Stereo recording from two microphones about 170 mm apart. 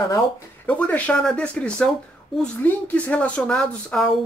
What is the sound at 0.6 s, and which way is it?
A woman's voice, 10° left (ahead or behind).